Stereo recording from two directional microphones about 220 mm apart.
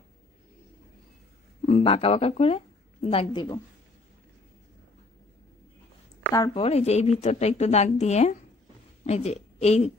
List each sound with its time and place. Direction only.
1.7 s a woman's voice: 25° left (ahead or behind)
6.3 s speech: 15° left (ahead or behind)
6.6 s a woman's voice: 30° left (ahead or behind)